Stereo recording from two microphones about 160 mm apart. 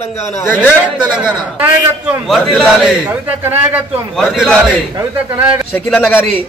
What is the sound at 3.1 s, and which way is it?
Speech, 10° right (ahead or behind).